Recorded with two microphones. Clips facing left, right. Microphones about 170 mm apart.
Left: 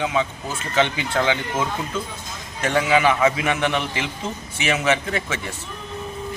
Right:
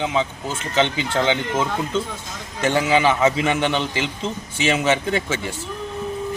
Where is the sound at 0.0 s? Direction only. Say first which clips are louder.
Right 1 dB; 25° right (ahead or behind).